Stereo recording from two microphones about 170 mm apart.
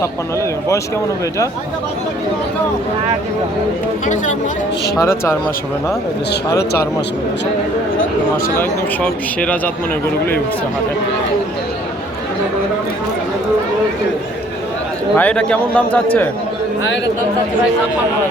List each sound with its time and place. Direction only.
0.0 s a man's voice: 15° left (ahead or behind)
4.0 s speech: 50° left (ahead or behind)
4.9 s a man's voice: 15° left (ahead or behind)
15.1 s a man's voice: 10° left (ahead or behind)